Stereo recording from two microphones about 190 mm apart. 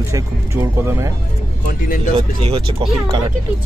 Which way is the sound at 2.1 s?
30° right (ahead or behind).